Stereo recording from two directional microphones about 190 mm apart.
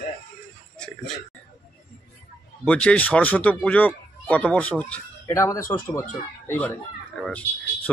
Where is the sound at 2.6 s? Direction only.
5° left (ahead or behind).